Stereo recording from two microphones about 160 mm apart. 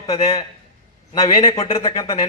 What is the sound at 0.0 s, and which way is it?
A man's voice, 35° left (ahead or behind).